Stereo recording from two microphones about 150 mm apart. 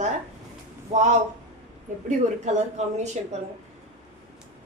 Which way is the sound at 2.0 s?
50° right (ahead or behind).